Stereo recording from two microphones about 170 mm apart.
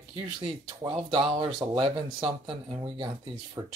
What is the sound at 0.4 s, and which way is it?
Speech, 30° right (ahead or behind).